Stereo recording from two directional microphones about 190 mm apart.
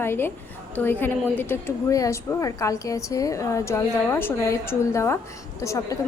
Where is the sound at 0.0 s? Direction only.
10° left (ahead or behind).